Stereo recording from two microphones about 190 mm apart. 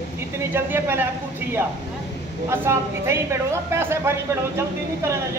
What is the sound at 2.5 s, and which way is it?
A woman's voice, 15° right (ahead or behind).